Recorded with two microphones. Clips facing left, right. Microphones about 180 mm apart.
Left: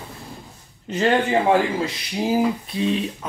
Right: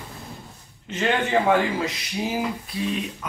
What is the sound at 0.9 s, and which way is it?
Speech, 35° left (ahead or behind).